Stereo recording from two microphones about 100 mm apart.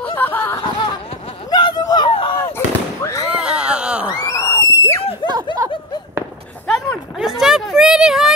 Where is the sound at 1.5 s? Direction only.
45° left (ahead or behind).